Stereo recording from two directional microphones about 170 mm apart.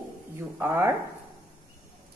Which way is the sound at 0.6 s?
15° right (ahead or behind).